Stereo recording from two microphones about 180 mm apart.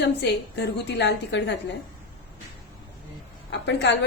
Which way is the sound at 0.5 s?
70° left (ahead or behind).